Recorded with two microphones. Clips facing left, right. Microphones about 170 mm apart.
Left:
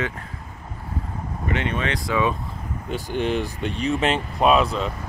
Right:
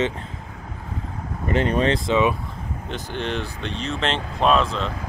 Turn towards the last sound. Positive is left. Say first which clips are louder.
# left 1 dB
turn(degrees=10)  # may be behind; listen again after turning